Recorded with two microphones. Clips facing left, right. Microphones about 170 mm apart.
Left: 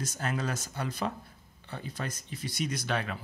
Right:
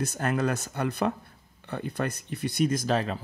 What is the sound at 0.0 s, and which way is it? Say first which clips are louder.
Speech: right 6 dB; 60° right (ahead or behind).